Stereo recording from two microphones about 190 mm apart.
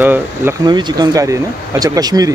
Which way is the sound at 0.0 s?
10° right (ahead or behind).